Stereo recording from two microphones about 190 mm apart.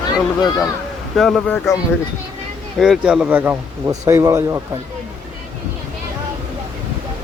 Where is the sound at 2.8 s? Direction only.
5° right (ahead or behind).